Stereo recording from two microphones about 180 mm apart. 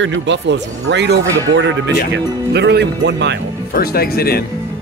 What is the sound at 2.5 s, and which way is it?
Speech, 65° right (ahead or behind).